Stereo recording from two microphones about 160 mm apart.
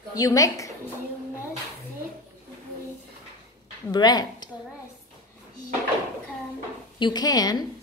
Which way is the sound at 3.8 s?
25° left (ahead or behind).